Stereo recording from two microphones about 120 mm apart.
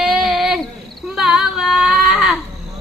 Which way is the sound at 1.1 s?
5° right (ahead or behind).